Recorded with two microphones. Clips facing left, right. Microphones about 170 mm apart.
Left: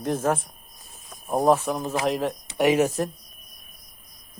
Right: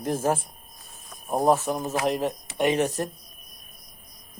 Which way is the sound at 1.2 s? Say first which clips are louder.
Left 1 dB; centre (ahead or behind).